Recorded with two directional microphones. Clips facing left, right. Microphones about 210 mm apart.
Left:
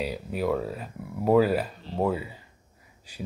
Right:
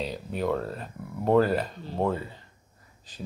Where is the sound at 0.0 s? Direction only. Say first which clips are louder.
Left 1 dB; 5° left (ahead or behind).